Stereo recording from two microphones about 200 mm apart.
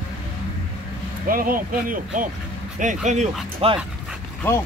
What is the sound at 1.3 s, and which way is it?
Speech, 45° right (ahead or behind).